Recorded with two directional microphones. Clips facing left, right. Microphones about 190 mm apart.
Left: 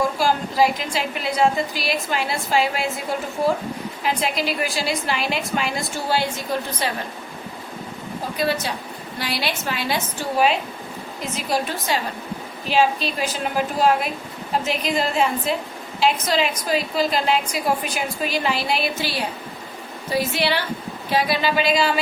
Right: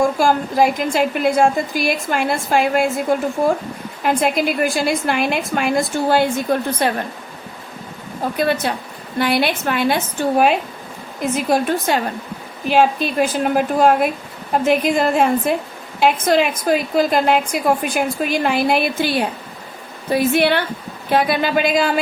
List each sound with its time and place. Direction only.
0.2 s a woman's voice: 50° right (ahead or behind)
4.0 s a woman's voice: 50° right (ahead or behind)
8.4 s a woman's voice: 55° right (ahead or behind)